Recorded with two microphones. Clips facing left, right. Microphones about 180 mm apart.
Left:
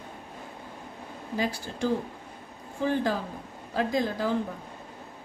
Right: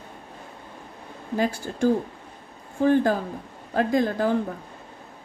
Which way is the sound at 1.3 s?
50° right (ahead or behind).